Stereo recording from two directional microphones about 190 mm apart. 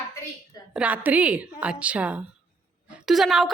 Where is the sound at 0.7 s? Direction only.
5° right (ahead or behind).